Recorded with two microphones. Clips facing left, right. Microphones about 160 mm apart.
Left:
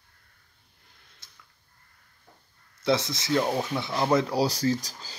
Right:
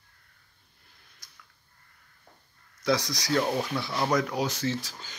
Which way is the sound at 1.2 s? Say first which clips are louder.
Right 1 dB; 25° left (ahead or behind).